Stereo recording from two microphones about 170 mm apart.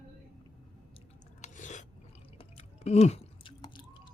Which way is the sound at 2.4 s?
40° left (ahead or behind).